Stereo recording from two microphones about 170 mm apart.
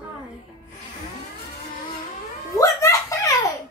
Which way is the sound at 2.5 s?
20° left (ahead or behind).